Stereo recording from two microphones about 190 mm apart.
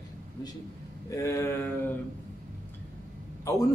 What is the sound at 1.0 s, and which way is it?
Speech, 15° left (ahead or behind).